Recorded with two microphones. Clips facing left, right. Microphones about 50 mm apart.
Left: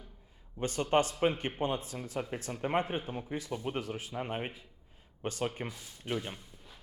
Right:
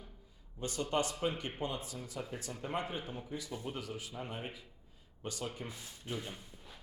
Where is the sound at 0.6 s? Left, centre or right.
Left.